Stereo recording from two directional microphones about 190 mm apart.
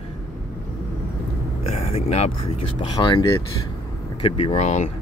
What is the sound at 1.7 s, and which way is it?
Speech, 35° left (ahead or behind).